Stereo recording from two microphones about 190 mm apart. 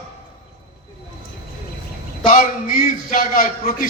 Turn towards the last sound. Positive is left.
turn(degrees=45)  # may be behind; listen again after turning